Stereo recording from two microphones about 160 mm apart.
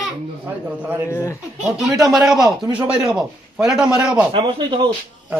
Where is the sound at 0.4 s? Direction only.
15° right (ahead or behind).